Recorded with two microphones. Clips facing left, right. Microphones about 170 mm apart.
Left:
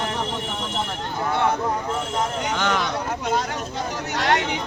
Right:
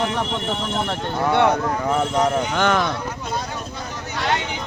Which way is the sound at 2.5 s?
50° right (ahead or behind).